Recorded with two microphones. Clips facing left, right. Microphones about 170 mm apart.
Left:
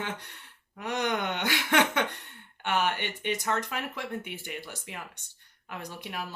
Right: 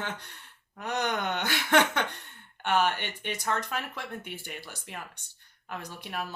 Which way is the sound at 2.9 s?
15° left (ahead or behind).